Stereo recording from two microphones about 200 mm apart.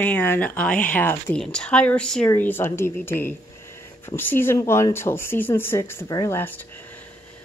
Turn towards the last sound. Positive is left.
turn(degrees=10)  # may be behind; listen again after turning